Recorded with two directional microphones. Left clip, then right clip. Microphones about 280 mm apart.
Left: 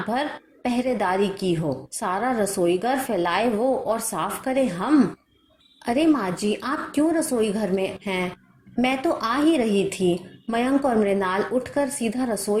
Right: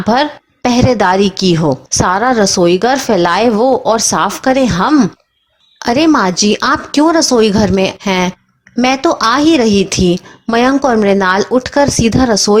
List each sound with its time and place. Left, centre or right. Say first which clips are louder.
0.1 s a woman's voice: right 16 dB; right